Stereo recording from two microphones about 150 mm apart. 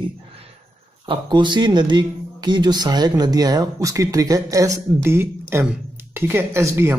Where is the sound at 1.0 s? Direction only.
30° right (ahead or behind).